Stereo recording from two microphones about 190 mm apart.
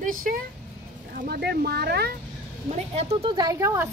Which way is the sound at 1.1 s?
55° right (ahead or behind).